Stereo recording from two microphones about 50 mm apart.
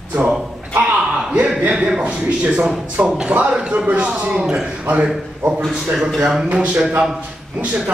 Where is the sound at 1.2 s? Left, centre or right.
Right.